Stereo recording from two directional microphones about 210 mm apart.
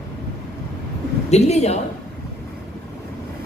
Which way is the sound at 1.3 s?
30° left (ahead or behind).